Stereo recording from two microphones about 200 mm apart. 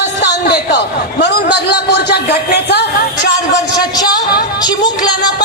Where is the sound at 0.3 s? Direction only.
55° left (ahead or behind).